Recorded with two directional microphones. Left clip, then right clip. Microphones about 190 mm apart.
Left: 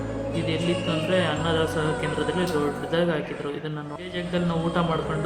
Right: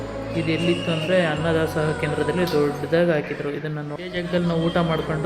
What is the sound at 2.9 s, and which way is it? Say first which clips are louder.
Speech: right 5 dB; 15° right (ahead or behind).